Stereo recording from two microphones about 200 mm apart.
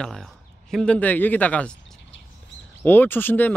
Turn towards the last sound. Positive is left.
turn(degrees=10)  # may be behind; listen again after turning